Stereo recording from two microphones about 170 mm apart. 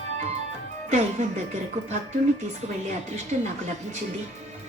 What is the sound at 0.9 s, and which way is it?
Speech, 40° right (ahead or behind).